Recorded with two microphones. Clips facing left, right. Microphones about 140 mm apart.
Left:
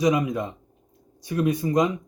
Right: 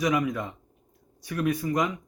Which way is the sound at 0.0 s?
20° left (ahead or behind).